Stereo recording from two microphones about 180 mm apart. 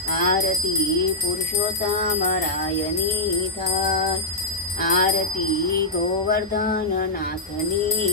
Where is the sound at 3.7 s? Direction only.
55° left (ahead or behind).